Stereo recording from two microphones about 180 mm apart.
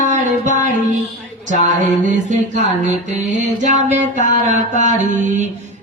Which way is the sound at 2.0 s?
45° right (ahead or behind).